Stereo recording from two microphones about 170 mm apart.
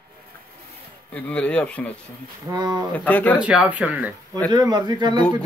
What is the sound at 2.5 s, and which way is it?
Speech, 25° right (ahead or behind).